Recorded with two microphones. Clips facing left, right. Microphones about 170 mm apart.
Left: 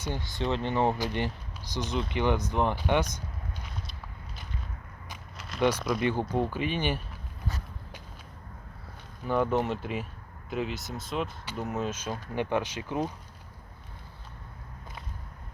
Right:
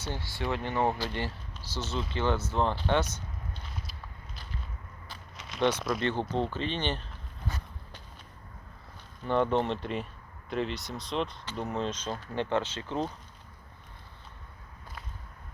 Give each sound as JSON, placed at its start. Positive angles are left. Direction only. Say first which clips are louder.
{"t": 0.0, "sound": "speech", "louder": "left 3 dB", "side_deg": 15}
{"t": 5.4, "sound": "a sound", "louder": "left 1 dB", "side_deg": 5}
{"t": 6.0, "sound": "speech", "louder": "left 2 dB", "side_deg": 10}
{"t": 9.2, "sound": "speech", "louder": "even", "side_deg": 5}